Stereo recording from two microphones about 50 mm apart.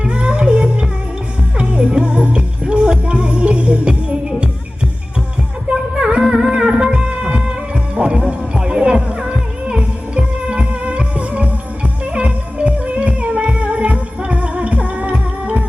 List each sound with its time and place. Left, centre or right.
0.0 s music: right
5.7 s music: centre